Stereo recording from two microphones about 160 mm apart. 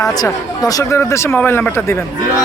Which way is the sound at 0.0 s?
25° left (ahead or behind).